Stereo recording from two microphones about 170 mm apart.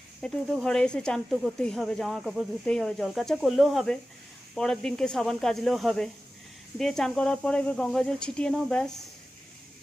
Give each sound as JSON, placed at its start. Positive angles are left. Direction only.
{"t": 0.2, "sound": "speech", "side_deg": 5}